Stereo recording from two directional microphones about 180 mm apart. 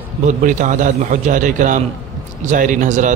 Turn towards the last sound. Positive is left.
turn(degrees=-45)  # may be behind; listen again after turning